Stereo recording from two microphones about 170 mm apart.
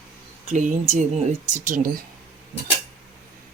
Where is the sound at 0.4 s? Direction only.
45° right (ahead or behind).